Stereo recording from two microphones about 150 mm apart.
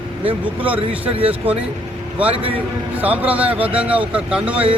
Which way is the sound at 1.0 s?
10° right (ahead or behind).